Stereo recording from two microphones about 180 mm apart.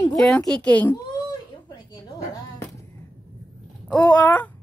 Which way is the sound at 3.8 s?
5° left (ahead or behind).